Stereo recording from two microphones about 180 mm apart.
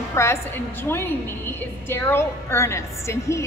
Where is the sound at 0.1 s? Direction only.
15° left (ahead or behind).